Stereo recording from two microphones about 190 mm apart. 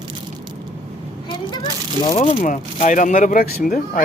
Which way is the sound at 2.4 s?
40° left (ahead or behind).